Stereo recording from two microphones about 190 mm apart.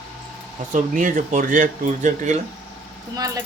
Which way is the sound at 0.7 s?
40° right (ahead or behind).